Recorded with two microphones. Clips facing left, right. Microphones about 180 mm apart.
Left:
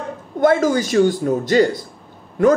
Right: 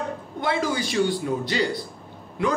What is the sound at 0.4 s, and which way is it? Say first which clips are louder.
Speech: left 10 dB; 45° left (ahead or behind).